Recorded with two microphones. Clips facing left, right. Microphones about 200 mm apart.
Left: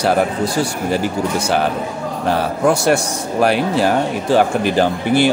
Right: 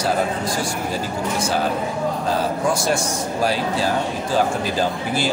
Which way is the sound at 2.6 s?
65° left (ahead or behind).